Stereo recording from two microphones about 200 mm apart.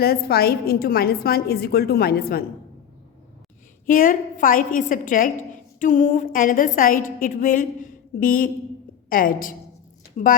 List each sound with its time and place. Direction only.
0.0 s a woman's voice: 50° left (ahead or behind)
3.8 s a woman's voice: 45° left (ahead or behind)